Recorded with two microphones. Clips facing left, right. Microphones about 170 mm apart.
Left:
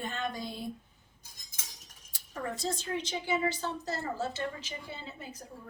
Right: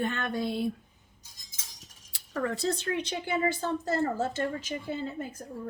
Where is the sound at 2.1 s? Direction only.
70° right (ahead or behind).